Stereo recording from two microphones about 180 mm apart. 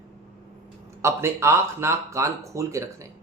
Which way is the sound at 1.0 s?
15° right (ahead or behind).